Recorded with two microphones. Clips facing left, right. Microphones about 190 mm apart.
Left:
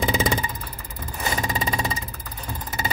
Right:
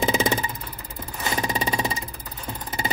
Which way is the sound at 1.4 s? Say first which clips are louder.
Right 3 dB; 20° right (ahead or behind).